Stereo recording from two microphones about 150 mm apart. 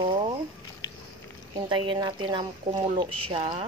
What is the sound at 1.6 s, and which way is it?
Speech, 30° right (ahead or behind).